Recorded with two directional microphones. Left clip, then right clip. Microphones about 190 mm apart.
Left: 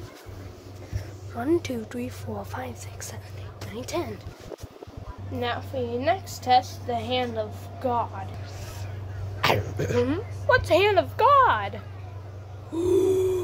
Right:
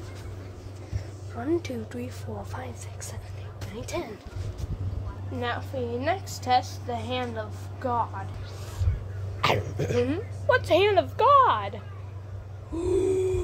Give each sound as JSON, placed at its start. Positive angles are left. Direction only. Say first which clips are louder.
{"t": 1.4, "sound": "a woman's voice", "louder": "left 3 dB", "side_deg": 25}
{"t": 5.4, "sound": "a woman's voice", "louder": "left 2 dB", "side_deg": -5}
{"t": 9.4, "sound": "a woman's voice", "louder": "left 2 dB", "side_deg": 5}
{"t": 12.7, "sound": "a sound", "louder": "left 3 dB", "side_deg": 10}